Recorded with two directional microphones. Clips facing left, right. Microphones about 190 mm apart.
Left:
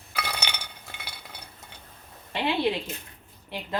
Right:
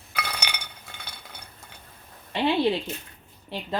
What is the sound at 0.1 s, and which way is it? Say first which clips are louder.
Chink: even; 5° left (ahead or behind).